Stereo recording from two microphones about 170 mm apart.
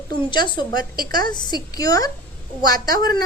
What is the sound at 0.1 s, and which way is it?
A woman's voice, 25° left (ahead or behind).